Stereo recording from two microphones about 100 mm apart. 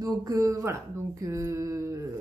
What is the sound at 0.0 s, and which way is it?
Speech, 35° right (ahead or behind).